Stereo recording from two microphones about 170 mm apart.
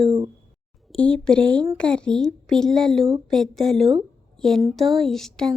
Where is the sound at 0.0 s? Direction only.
30° right (ahead or behind).